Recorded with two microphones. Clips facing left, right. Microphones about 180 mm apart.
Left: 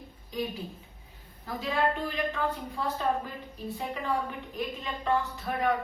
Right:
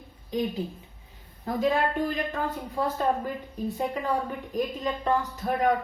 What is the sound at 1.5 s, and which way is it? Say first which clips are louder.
A woman's voice: right 4 dB; 45° right (ahead or behind).